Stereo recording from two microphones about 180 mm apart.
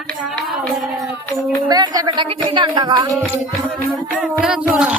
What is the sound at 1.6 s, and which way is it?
Speech, 20° right (ahead or behind).